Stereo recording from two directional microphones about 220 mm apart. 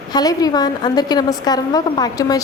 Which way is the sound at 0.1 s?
15° left (ahead or behind).